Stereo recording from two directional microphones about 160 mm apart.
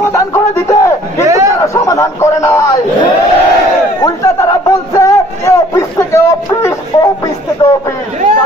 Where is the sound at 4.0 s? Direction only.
20° left (ahead or behind).